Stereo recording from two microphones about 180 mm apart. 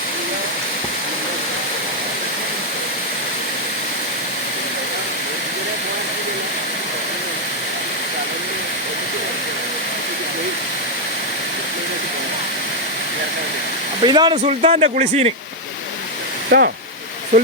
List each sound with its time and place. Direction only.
14.0 s speech: 25° right (ahead or behind)
14.4 s speech: 35° right (ahead or behind)
16.5 s speech: 65° right (ahead or behind)
17.3 s speech: 45° right (ahead or behind)